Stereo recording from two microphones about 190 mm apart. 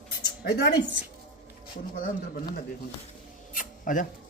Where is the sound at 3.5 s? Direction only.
45° left (ahead or behind).